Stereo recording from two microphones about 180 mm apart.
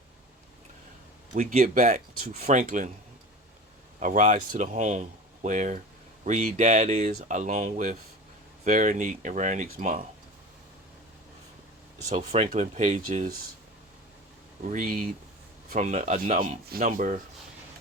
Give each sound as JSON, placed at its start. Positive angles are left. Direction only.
{"t": 1.3, "sound": "speech", "side_deg": -50}
{"t": 4.0, "sound": "speech", "side_deg": -45}
{"t": 12.1, "sound": "speech", "side_deg": -40}
{"t": 14.6, "sound": "speech", "side_deg": -50}